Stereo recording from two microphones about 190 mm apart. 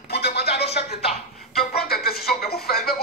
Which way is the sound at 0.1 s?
60° left (ahead or behind).